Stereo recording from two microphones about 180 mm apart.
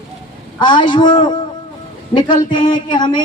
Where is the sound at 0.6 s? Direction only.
25° left (ahead or behind).